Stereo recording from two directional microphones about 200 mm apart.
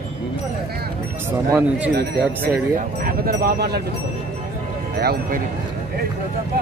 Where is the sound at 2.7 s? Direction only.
45° right (ahead or behind).